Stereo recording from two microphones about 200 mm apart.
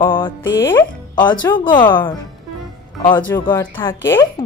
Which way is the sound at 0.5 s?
10° left (ahead or behind).